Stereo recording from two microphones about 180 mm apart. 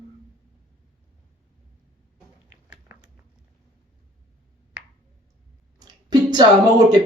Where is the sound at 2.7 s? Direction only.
15° right (ahead or behind).